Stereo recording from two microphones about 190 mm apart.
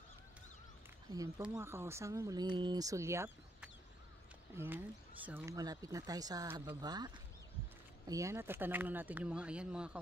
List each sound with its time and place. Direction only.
1.5 s speech: 15° right (ahead or behind)
8.1 s speech: 15° right (ahead or behind)